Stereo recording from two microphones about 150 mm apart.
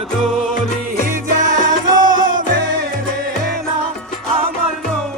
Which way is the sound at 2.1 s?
65° right (ahead or behind).